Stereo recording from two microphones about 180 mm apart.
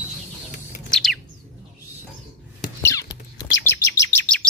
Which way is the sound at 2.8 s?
15° left (ahead or behind).